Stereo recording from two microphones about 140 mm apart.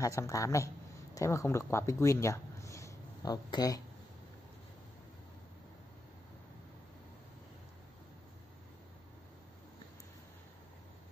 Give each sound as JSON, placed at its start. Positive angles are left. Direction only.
{"t": 0.0, "sound": "a man's voice", "side_deg": 20}